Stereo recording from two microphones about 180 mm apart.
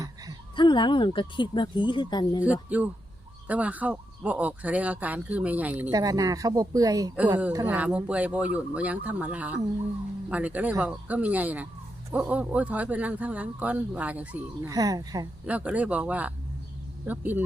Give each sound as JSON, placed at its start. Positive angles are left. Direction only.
{"t": 0.5, "sound": "speech", "side_deg": 25}
{"t": 2.4, "sound": "speech", "side_deg": -10}
{"t": 5.9, "sound": "speech", "side_deg": -20}
{"t": 7.7, "sound": "speech", "side_deg": -10}
{"t": 14.7, "sound": "speech", "side_deg": -20}
{"t": 15.4, "sound": "speech", "side_deg": -10}